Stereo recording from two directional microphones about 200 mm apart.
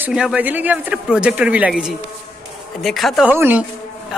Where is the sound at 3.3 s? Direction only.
10° right (ahead or behind).